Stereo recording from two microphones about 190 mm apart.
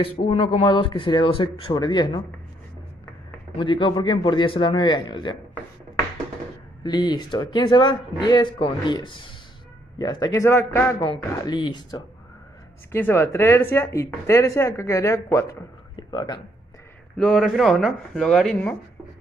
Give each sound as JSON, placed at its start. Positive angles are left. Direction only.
{"t": 0.0, "sound": "speech", "side_deg": 30}
{"t": 3.5, "sound": "speech", "side_deg": 25}
{"t": 6.8, "sound": "speech", "side_deg": 20}
{"t": 17.2, "sound": "speech", "side_deg": 0}